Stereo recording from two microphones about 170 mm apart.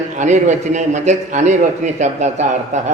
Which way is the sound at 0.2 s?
45° right (ahead or behind).